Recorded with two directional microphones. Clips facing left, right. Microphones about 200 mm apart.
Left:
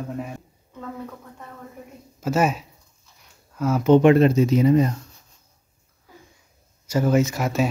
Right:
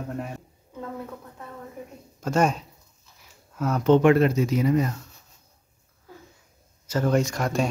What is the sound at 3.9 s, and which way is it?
Speech, 20° left (ahead or behind).